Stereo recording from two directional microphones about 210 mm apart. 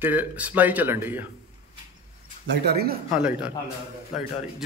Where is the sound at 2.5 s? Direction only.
50° right (ahead or behind).